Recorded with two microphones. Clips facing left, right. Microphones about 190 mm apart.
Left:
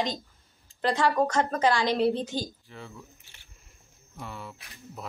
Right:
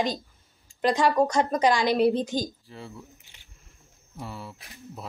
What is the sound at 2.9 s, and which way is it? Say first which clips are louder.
Keys jangling: right 2 dB; 15° right (ahead or behind).